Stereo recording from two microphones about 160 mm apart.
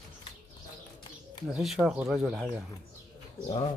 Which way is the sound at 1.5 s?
5° right (ahead or behind).